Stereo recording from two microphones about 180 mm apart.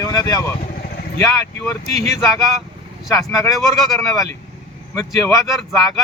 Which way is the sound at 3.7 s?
Centre (ahead or behind).